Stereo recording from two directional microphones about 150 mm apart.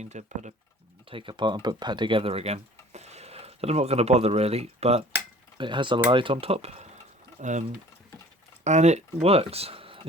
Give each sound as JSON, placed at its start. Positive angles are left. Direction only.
{"t": 0.0, "sound": "speech", "side_deg": -50}
{"t": 1.0, "sound": "speech", "side_deg": -35}
{"t": 5.5, "sound": "speech", "side_deg": -30}
{"t": 7.3, "sound": "speech", "side_deg": -55}
{"t": 8.6, "sound": "speech", "side_deg": -50}